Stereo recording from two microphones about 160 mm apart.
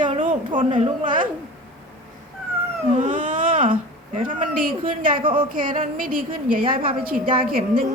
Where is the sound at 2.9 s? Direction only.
55° right (ahead or behind).